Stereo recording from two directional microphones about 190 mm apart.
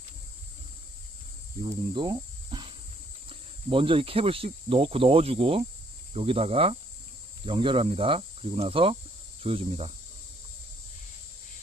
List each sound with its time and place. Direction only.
1.6 s speech: 25° right (ahead or behind)